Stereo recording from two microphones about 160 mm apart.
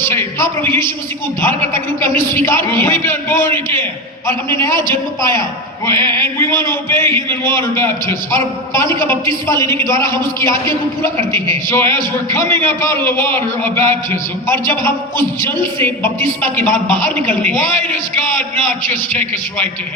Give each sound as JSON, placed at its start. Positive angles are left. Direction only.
{"t": 0.0, "sound": "a man's voice", "side_deg": 15}
{"t": 4.7, "sound": "a man's voice", "side_deg": -30}
{"t": 5.8, "sound": "a man's voice", "side_deg": 15}